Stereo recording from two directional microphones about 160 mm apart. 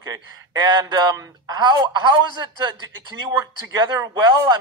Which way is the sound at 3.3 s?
15° right (ahead or behind).